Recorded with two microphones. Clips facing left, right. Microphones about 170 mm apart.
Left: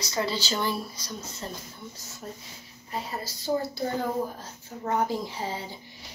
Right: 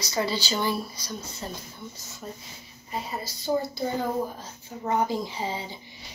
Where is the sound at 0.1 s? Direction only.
5° right (ahead or behind).